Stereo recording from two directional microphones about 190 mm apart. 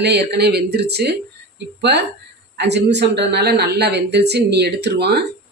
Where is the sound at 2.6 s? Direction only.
65° right (ahead or behind).